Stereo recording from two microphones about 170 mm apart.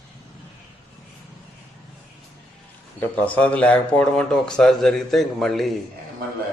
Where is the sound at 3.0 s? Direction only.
10° left (ahead or behind).